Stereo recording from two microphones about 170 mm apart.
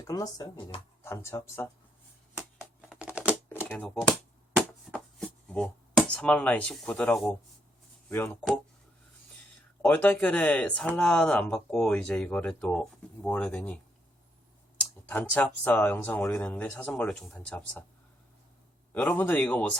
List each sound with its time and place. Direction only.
0.1 s speech: 20° left (ahead or behind)
2.9 s typing: 5° right (ahead or behind)
3.2 s typewriter: 15° left (ahead or behind)
4.9 s speech: 5° left (ahead or behind)
9.8 s speech: 10° left (ahead or behind)
15.1 s speech: 10° left (ahead or behind)
18.9 s speech: 10° left (ahead or behind)